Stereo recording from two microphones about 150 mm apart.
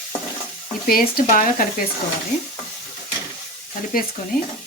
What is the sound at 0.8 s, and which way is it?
Speech, 75° left (ahead or behind).